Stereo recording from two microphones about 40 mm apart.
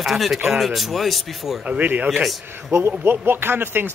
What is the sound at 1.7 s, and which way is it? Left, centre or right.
Speech, right.